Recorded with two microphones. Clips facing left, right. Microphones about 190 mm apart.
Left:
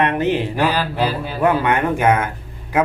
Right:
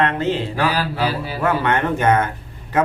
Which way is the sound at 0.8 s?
5° right (ahead or behind).